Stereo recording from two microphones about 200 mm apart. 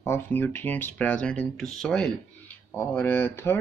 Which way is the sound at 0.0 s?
10° left (ahead or behind).